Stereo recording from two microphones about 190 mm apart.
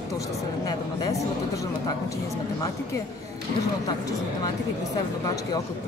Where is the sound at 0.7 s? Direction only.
20° left (ahead or behind).